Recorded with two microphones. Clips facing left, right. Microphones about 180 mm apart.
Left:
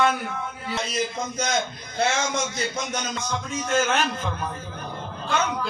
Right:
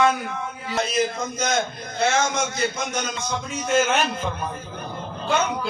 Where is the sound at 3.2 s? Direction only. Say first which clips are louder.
Right 2 dB; 5° right (ahead or behind).